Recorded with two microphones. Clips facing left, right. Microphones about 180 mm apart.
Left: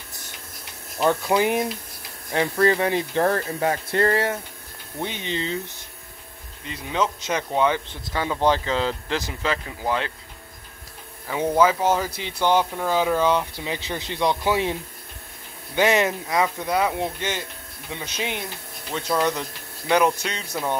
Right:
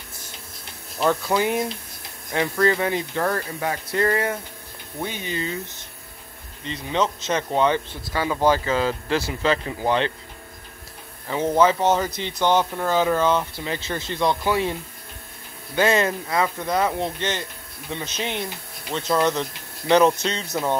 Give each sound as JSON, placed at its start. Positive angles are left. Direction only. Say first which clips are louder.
{"t": 1.0, "sound": "speech", "louder": "left 1 dB", "side_deg": 15}
{"t": 6.6, "sound": "speech", "louder": "right 1 dB", "side_deg": 10}
{"t": 8.2, "sound": "speech", "louder": "right 1 dB", "side_deg": -5}
{"t": 11.2, "sound": "speech", "louder": "right 1 dB", "side_deg": 10}
{"t": 20.1, "sound": "speech", "louder": "right 3 dB", "side_deg": -25}